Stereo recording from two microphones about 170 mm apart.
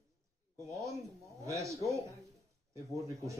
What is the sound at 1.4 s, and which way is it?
Speech, 20° right (ahead or behind).